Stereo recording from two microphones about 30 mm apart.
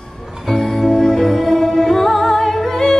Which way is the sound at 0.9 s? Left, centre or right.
Centre.